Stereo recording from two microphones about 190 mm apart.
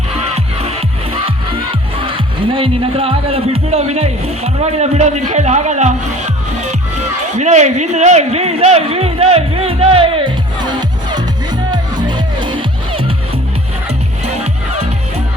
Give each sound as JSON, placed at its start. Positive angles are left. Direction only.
{"t": 0.1, "sound": "music", "side_deg": -30}
{"t": 2.0, "sound": "speech", "side_deg": -25}
{"t": 11.7, "sound": "music", "side_deg": -20}
{"t": 14.3, "sound": "music", "side_deg": -35}